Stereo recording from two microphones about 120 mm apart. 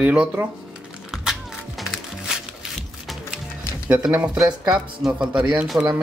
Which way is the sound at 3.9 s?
10° right (ahead or behind).